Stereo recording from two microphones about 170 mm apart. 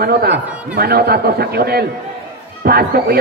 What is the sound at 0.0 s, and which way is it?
A man's voice, 65° right (ahead or behind).